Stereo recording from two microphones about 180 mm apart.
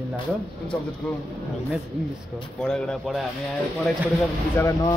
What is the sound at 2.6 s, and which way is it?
Speech, 5° left (ahead or behind).